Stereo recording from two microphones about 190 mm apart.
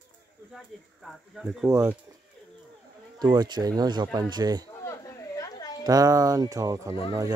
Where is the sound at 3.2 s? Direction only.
20° right (ahead or behind).